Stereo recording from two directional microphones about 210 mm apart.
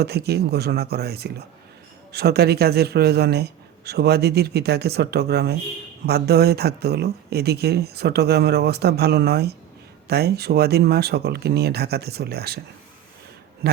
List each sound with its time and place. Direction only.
0.0 s speech: 50° right (ahead or behind)